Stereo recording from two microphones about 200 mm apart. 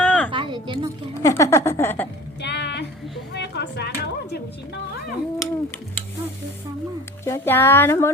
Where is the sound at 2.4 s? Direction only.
60° left (ahead or behind).